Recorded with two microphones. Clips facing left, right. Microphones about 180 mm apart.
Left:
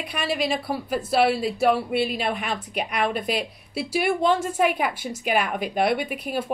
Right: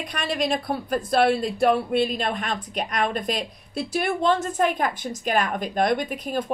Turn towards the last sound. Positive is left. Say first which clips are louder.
# right 1 dB
turn(degrees=10)  # may be behind; listen again after turning